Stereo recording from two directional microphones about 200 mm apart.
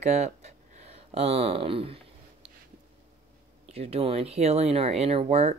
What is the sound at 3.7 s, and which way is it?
Speech, 30° right (ahead or behind).